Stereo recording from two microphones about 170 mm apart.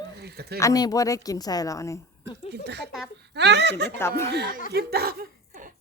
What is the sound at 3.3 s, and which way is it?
Speech, 90° right.